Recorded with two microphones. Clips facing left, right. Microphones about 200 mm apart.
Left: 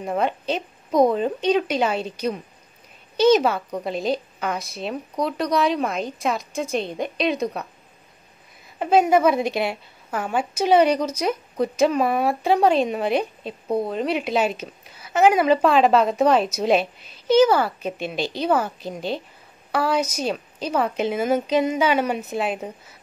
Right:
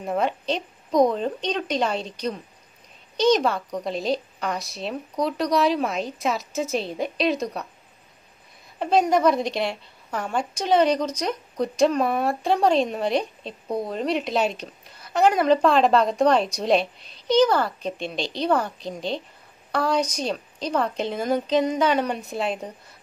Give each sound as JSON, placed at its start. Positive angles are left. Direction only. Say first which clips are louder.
{"t": 0.0, "sound": "a woman's voice", "louder": "left 1 dB", "side_deg": 0}
{"t": 8.7, "sound": "a woman's voice", "louder": "left 3 dB", "side_deg": 5}